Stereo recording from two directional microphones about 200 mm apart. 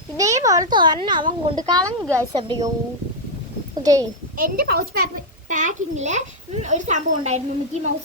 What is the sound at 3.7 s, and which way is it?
Speech, 20° right (ahead or behind).